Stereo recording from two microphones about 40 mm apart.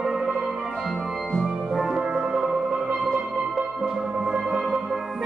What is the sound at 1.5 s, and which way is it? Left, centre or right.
Music, centre.